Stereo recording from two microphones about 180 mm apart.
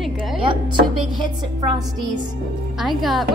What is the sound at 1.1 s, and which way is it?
Speech, 25° right (ahead or behind).